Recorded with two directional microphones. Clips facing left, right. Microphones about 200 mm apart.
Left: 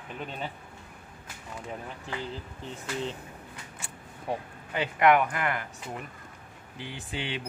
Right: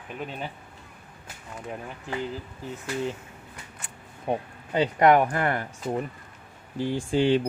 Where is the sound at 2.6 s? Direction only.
10° right (ahead or behind).